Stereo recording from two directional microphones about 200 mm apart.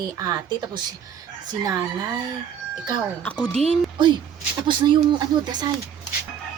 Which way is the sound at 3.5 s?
30° right (ahead or behind).